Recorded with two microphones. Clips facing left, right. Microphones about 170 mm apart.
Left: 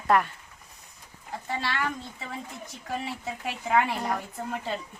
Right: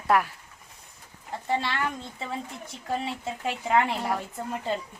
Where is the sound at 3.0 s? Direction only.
25° right (ahead or behind).